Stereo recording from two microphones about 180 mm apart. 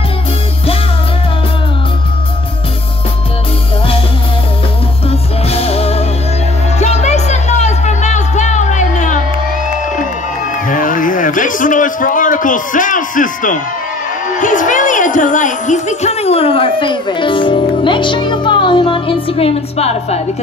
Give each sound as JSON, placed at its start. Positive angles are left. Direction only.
{"t": 5.5, "sound": "music", "side_deg": 35}
{"t": 10.7, "sound": "a sound", "side_deg": 50}
{"t": 14.4, "sound": "music", "side_deg": 45}